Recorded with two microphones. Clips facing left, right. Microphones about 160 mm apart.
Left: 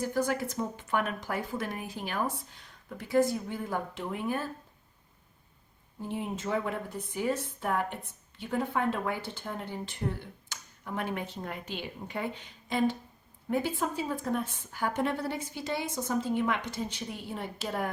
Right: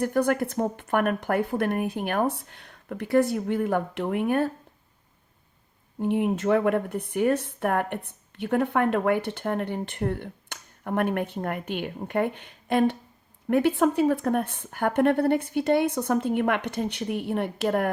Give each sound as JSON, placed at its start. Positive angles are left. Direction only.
{"t": 0.0, "sound": "speech", "side_deg": -60}
{"t": 6.0, "sound": "speech", "side_deg": -65}